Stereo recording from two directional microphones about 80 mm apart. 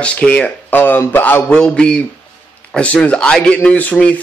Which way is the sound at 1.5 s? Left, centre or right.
Centre.